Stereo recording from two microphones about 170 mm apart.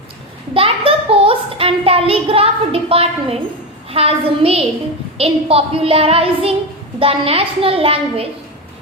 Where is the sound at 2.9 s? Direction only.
35° right (ahead or behind).